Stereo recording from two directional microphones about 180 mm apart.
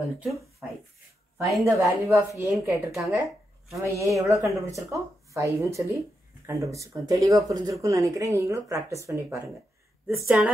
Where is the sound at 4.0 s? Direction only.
15° right (ahead or behind).